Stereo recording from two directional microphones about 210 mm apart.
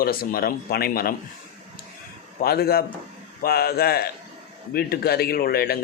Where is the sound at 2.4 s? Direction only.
45° left (ahead or behind).